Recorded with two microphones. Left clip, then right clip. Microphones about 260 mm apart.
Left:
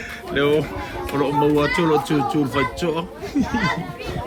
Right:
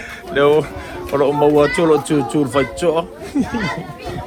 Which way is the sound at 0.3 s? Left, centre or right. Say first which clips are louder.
Right 6 dB; centre.